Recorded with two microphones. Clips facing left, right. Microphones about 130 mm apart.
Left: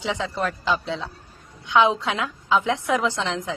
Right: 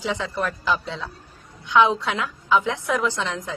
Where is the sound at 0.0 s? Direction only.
20° left (ahead or behind).